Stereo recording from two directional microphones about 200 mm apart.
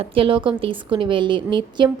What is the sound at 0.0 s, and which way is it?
A woman's voice, 25° right (ahead or behind).